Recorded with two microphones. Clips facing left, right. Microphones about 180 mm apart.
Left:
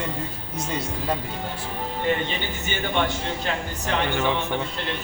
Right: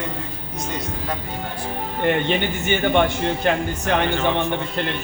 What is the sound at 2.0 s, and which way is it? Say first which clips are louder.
Speech: right 6 dB; 65° right (ahead or behind).